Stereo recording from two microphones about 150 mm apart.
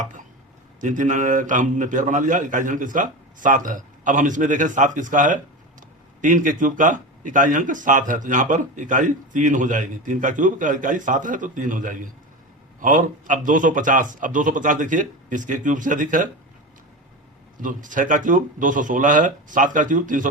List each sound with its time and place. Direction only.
0.0 s a sound: 60° right (ahead or behind)
0.8 s speech: 55° right (ahead or behind)
17.6 s speech: 60° right (ahead or behind)